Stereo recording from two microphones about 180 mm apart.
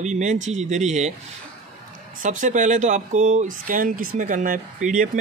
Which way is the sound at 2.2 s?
45° right (ahead or behind).